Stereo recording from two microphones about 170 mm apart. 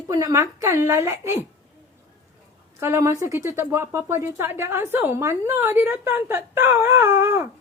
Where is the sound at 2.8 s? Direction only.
15° right (ahead or behind).